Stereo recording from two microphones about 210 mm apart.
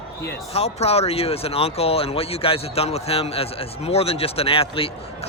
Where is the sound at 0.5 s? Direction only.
30° left (ahead or behind).